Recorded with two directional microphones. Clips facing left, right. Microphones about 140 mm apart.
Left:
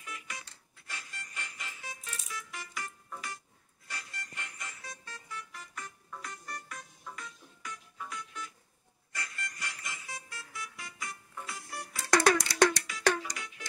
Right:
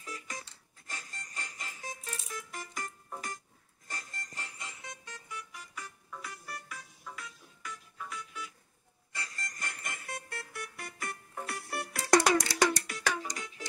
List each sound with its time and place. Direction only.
0.0 s music: 35° right (ahead or behind); by 8.5 s 5° right (ahead or behind)
9.1 s music: 30° right (ahead or behind); by 12.0 s 65° right (ahead or behind)
12.4 s music: 50° right (ahead or behind)
13.2 s music: 40° right (ahead or behind)